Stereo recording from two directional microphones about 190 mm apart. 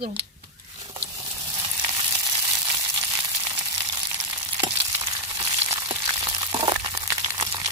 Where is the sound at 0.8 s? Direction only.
25° right (ahead or behind).